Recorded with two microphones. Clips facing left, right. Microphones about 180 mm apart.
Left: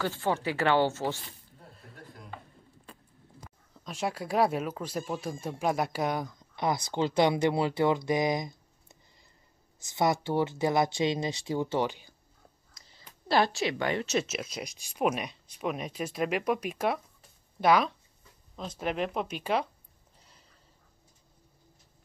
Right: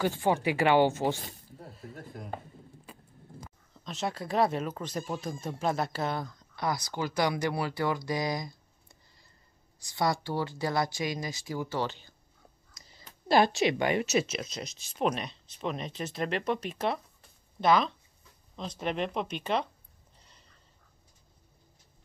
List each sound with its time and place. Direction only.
0.0 s speech: 15° right (ahead or behind)
1.7 s a sound: centre (ahead or behind)
2.9 s vehicle: 5° right (ahead or behind)
3.7 s speech: 10° left (ahead or behind)
9.8 s speech: 20° left (ahead or behind)
13.3 s speech: 20° right (ahead or behind)
14.1 s speech: 5° left (ahead or behind)